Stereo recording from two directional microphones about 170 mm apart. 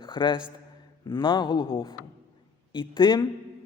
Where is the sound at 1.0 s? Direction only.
25° left (ahead or behind).